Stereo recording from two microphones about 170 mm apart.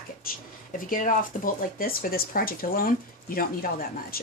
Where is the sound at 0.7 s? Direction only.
50° left (ahead or behind).